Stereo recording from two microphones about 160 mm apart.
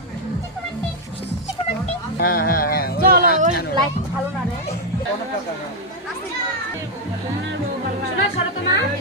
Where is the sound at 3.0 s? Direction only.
60° right (ahead or behind).